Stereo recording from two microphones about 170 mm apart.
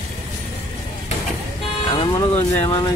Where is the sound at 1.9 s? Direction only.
30° left (ahead or behind).